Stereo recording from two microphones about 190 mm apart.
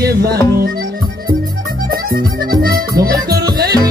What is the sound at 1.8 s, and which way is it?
Music, 50° right (ahead or behind).